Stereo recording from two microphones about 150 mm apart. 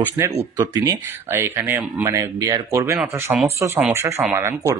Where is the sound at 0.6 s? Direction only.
20° right (ahead or behind).